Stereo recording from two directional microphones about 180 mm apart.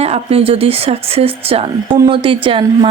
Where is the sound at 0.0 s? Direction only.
35° right (ahead or behind).